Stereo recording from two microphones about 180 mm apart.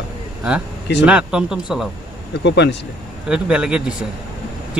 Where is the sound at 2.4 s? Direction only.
75° left (ahead or behind).